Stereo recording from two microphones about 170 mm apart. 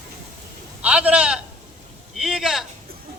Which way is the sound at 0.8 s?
5° right (ahead or behind).